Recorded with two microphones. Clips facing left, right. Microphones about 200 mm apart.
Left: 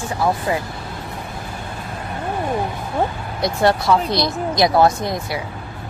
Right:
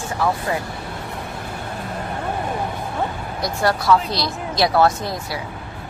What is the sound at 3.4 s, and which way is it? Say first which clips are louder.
Speech: left 4 dB; 25° left (ahead or behind).